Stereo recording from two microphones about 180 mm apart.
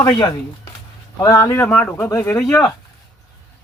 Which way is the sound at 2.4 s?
5° left (ahead or behind).